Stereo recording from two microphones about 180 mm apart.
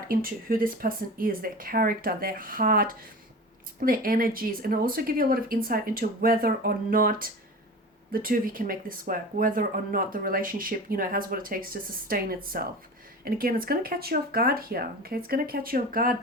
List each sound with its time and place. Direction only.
0.1 s speech: 55° right (ahead or behind)